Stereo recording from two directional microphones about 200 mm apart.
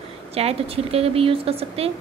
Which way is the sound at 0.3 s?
30° right (ahead or behind).